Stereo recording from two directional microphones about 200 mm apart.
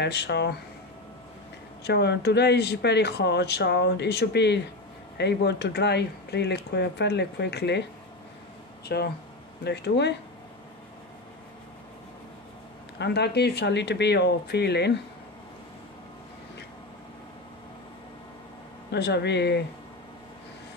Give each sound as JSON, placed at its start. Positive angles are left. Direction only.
{"t": 0.0, "sound": "speech", "side_deg": 55}
{"t": 1.9, "sound": "speech", "side_deg": 55}
{"t": 8.8, "sound": "speech", "side_deg": 55}
{"t": 13.0, "sound": "speech", "side_deg": 55}
{"t": 18.9, "sound": "speech", "side_deg": 55}